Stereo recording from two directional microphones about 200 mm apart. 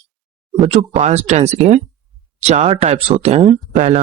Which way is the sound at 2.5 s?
30° right (ahead or behind).